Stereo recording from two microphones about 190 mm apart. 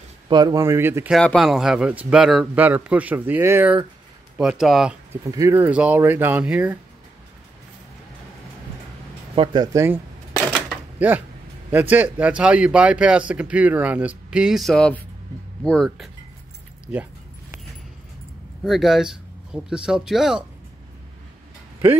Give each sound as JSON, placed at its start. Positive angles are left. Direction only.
{"t": 0.3, "sound": "a man's voice", "side_deg": -20}
{"t": 1.1, "sound": "a man's voice", "side_deg": 0}
{"t": 5.3, "sound": "a man's voice", "side_deg": -15}
{"t": 9.3, "sound": "speech", "side_deg": -25}
{"t": 10.3, "sound": "a sound", "side_deg": 0}
{"t": 11.7, "sound": "speech", "side_deg": -10}
{"t": 18.6, "sound": "speech", "side_deg": 0}